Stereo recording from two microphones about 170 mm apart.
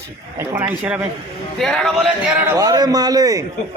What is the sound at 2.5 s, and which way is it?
Speech, 20° right (ahead or behind).